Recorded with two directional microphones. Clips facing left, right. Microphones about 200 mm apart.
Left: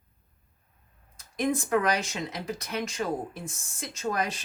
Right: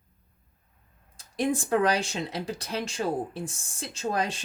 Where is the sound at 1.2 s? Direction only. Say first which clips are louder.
Right 1 dB; 30° right (ahead or behind).